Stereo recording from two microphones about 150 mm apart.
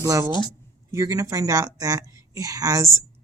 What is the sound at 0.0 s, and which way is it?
Speech, 20° right (ahead or behind).